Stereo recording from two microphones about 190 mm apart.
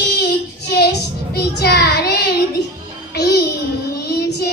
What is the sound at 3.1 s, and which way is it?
Music, 60° left (ahead or behind).